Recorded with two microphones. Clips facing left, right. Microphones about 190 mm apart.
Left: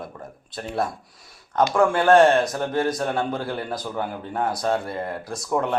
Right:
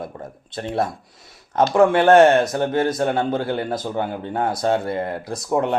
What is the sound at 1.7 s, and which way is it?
Speech, 25° right (ahead or behind).